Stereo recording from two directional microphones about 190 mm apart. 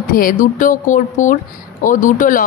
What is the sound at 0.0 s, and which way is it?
Speech, 45° left (ahead or behind).